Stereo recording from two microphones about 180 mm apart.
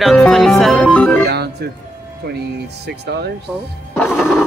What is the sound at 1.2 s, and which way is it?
Speech, 65° right (ahead or behind).